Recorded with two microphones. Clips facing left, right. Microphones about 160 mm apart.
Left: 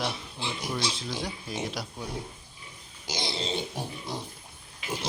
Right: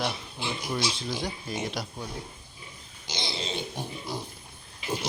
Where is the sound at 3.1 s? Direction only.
5° left (ahead or behind).